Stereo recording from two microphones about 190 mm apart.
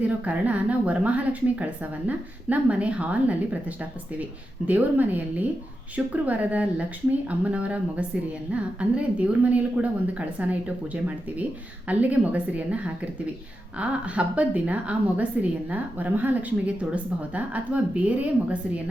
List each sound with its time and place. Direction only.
0.0 s a woman's voice: 5° right (ahead or behind)